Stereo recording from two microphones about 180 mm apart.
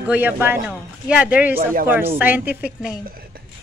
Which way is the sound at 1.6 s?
50° right (ahead or behind).